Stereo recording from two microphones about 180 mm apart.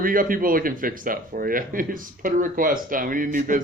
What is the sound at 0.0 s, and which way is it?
Speech, 50° right (ahead or behind).